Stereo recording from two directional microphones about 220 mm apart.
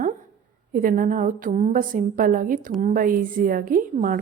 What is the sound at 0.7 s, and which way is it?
A woman's voice, 40° right (ahead or behind).